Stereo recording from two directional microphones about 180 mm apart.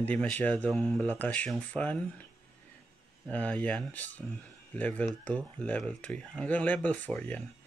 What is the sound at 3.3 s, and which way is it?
Speech, 10° left (ahead or behind).